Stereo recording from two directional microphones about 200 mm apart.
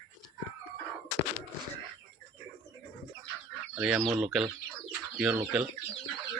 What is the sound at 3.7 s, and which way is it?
Speech, 5° right (ahead or behind).